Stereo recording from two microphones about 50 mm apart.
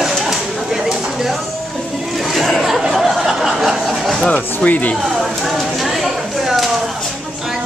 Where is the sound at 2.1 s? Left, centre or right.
Centre.